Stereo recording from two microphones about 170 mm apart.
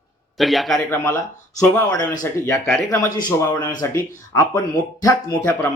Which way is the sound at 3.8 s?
20° left (ahead or behind).